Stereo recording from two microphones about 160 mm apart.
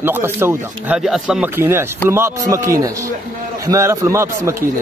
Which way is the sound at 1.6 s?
15° right (ahead or behind).